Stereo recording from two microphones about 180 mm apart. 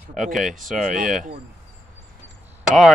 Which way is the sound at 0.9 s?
45° right (ahead or behind).